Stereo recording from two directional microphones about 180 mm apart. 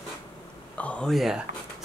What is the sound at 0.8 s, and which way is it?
Speech, 5° left (ahead or behind).